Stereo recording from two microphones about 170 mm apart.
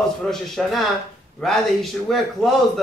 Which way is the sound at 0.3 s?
Centre (ahead or behind).